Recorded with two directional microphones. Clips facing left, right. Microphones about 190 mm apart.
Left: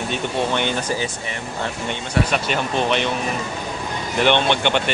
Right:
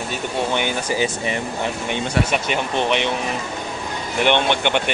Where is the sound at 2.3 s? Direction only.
15° right (ahead or behind).